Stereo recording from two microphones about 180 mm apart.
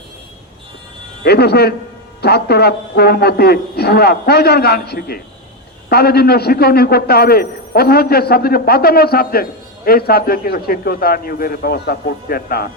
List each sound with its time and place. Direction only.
1.2 s a man's voice: 65° left (ahead or behind)